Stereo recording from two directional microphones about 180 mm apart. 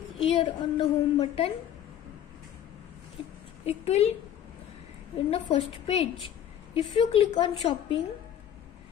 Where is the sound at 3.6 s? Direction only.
35° left (ahead or behind).